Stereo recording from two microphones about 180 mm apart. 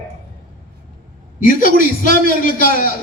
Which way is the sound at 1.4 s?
50° left (ahead or behind).